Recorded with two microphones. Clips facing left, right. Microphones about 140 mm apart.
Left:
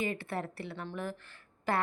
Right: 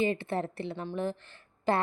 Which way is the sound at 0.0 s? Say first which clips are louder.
Right 6 dB; 25° right (ahead or behind).